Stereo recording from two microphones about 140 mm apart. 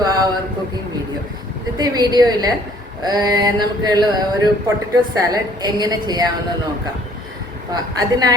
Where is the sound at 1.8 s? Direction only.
30° right (ahead or behind).